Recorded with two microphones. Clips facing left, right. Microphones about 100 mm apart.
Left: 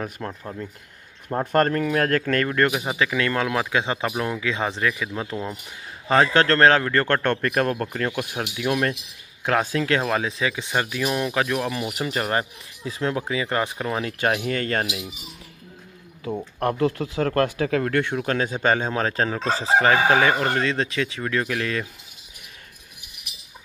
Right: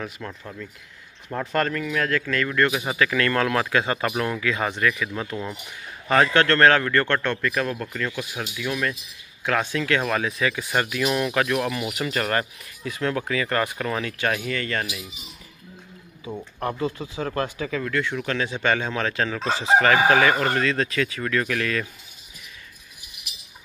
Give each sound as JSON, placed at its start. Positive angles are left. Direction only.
{"t": 0.3, "sound": "speech", "side_deg": 30}
{"t": 1.4, "sound": "speech", "side_deg": 45}
{"t": 2.9, "sound": "speech", "side_deg": 20}
{"t": 7.2, "sound": "speech", "side_deg": 50}
{"t": 9.5, "sound": "speech", "side_deg": 35}
{"t": 14.0, "sound": "speech", "side_deg": 30}
{"t": 16.5, "sound": "speech", "side_deg": 60}
{"t": 18.1, "sound": "speech", "side_deg": 40}
{"t": 20.1, "sound": "speech", "side_deg": 20}